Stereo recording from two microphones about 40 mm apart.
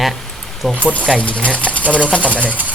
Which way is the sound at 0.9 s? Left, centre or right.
Left.